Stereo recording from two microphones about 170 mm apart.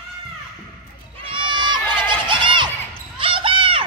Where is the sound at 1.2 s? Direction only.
30° right (ahead or behind).